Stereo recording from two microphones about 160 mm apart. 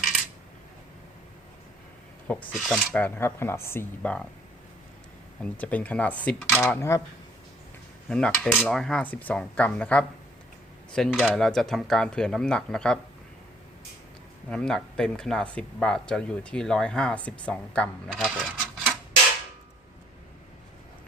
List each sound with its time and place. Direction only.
2.2 s speech: 10° left (ahead or behind)
3.0 s speech: 15° left (ahead or behind)
5.4 s speech: 10° left (ahead or behind)
8.1 s speech: 5° left (ahead or behind)
14.5 s speech: 5° left (ahead or behind)
18.1 s speech: 5° right (ahead or behind)